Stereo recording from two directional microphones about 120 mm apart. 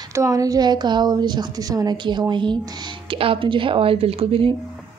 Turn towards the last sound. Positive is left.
turn(degrees=-50)  # may be behind; listen again after turning